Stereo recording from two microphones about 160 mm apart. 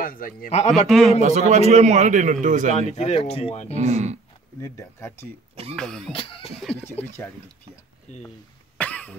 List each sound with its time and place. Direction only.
0.0 s a man's voice: 60° left (ahead or behind)
0.5 s speech: 40° left (ahead or behind)
0.7 s throat clearing: centre (ahead or behind)
1.2 s a man's voice: 45° right (ahead or behind)
2.8 s speech: 40° left (ahead or behind)
3.7 s a man's voice: 45° right (ahead or behind)
4.6 s speech: 15° left (ahead or behind)
5.8 s throat clearing: 5° left (ahead or behind)
6.1 s speech: 35° left (ahead or behind)
6.8 s speech: 15° left (ahead or behind)
8.1 s speech: 45° left (ahead or behind)
8.7 s cough: 10° left (ahead or behind)